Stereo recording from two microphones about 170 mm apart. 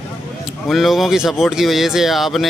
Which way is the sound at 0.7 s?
Centre (ahead or behind).